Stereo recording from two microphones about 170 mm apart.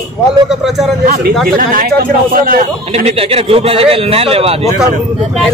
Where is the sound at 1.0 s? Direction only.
65° right (ahead or behind).